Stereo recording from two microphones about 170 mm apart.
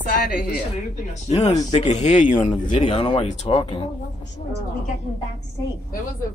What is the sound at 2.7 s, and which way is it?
Speech, 30° left (ahead or behind).